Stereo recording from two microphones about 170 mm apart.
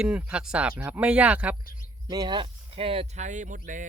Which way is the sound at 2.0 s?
25° right (ahead or behind).